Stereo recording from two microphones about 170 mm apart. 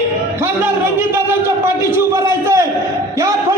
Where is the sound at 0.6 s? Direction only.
15° right (ahead or behind).